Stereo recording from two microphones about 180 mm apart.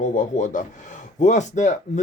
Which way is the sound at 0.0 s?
45° left (ahead or behind).